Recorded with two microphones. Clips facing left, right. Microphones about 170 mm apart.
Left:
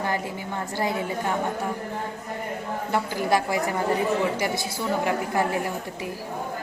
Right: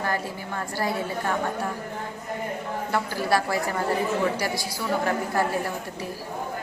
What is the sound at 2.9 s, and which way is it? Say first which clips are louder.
A woman's voice: left 1 dB; 15° left (ahead or behind).